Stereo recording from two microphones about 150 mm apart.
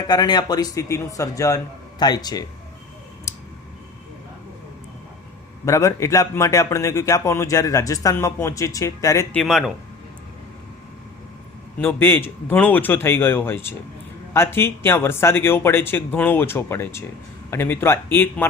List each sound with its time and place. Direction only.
0.1 s a man's voice: 25° left (ahead or behind)
3.3 s clicking: 20° left (ahead or behind)
5.6 s a man's voice: 20° left (ahead or behind)
9.3 s a man's voice: centre (ahead or behind)
11.8 s speech: 15° left (ahead or behind)